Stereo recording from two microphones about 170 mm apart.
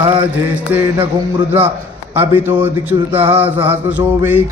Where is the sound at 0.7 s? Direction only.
10° right (ahead or behind).